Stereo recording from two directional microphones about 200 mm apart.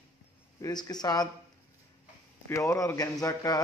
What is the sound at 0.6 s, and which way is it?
Speech, 20° left (ahead or behind).